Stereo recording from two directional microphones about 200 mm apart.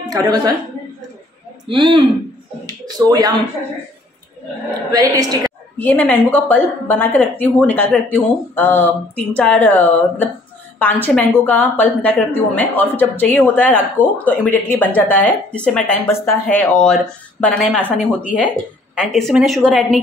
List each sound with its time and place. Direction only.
0.1 s speech: 20° right (ahead or behind)
1.7 s speech: 25° right (ahead or behind)
4.9 s a woman's voice: 20° right (ahead or behind)
5.8 s speech: 10° left (ahead or behind)
18.9 s a woman's voice: centre (ahead or behind)